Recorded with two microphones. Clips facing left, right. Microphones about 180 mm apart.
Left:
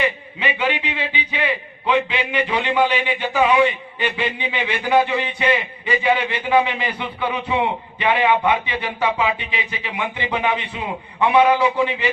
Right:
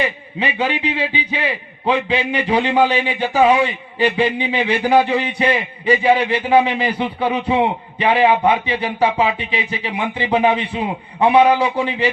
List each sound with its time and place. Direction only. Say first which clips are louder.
0.0 s a man's voice: right 1 dB; 35° right (ahead or behind)